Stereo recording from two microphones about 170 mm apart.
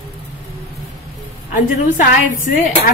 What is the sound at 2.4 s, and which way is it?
Speech, 55° left (ahead or behind).